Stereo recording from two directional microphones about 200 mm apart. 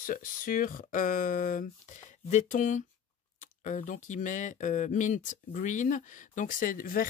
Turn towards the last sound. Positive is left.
turn(degrees=45)  # may be behind; listen again after turning